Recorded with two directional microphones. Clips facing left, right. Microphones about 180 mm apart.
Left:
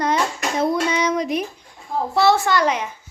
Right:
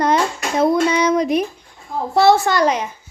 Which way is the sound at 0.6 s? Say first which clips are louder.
Right 5 dB; 55° right (ahead or behind).